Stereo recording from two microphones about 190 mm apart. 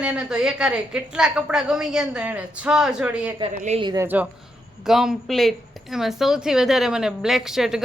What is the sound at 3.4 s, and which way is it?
Speech, 30° right (ahead or behind).